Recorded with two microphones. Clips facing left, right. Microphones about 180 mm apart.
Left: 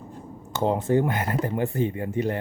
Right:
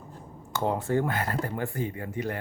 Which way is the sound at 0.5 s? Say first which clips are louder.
Left 4 dB; 20° left (ahead or behind).